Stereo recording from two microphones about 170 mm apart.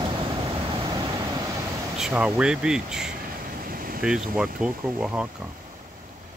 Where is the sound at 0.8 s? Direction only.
25° right (ahead or behind).